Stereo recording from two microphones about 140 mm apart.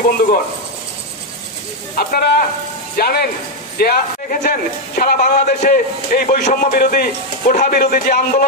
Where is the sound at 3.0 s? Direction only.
90° left.